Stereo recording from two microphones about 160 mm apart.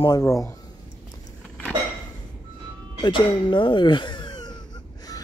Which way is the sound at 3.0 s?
30° left (ahead or behind).